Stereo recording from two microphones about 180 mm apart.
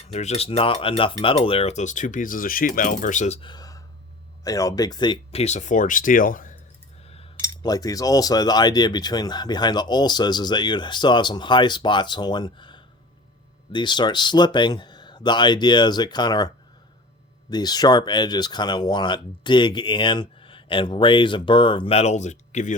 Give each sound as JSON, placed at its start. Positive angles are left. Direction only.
{"t": 0.0, "sound": "speech", "side_deg": 35}
{"t": 3.5, "sound": "a sound", "side_deg": 20}
{"t": 4.4, "sound": "speech", "side_deg": 20}
{"t": 7.6, "sound": "speech", "side_deg": 20}
{"t": 17.5, "sound": "speech", "side_deg": 20}